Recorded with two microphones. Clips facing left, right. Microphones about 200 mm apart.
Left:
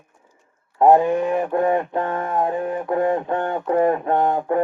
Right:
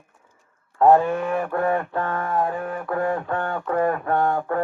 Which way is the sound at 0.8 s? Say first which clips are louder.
Left 2 dB; 15° left (ahead or behind).